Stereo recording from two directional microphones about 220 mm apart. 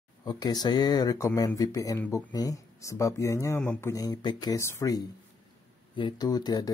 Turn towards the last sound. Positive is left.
turn(degrees=15)  # may be behind; listen again after turning